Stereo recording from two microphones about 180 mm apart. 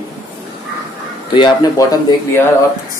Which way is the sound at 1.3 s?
25° left (ahead or behind).